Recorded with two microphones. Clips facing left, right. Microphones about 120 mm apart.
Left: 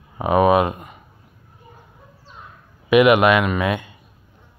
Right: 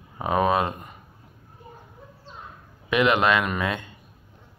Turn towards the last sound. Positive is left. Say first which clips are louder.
# left 6 dB
turn(degrees=10)  # may be behind; listen again after turning